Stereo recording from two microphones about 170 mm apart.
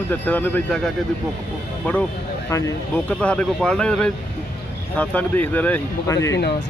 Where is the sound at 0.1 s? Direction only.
10° left (ahead or behind).